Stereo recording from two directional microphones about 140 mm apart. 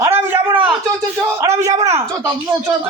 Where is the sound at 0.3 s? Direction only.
10° right (ahead or behind).